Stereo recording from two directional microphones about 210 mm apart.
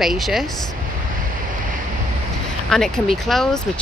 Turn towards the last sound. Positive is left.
turn(degrees=0)  # may be behind; listen again after turning